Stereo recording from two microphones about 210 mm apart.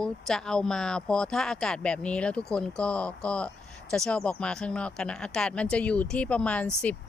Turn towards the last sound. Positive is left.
turn(degrees=5)  # may be behind; listen again after turning